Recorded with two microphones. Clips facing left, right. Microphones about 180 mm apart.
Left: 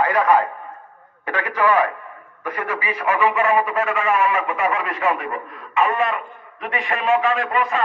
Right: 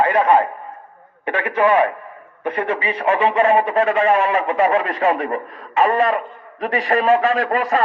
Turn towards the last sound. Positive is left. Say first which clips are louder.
# right 3 dB
turn(degrees=-40)  # may be behind; listen again after turning